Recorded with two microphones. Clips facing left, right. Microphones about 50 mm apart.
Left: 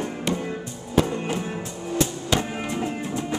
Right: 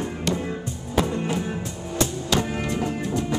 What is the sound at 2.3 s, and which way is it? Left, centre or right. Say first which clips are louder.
Music: right 1 dB; centre.